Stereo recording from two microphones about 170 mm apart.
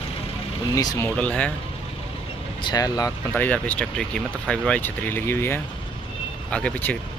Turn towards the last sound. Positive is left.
turn(degrees=10)  # may be behind; listen again after turning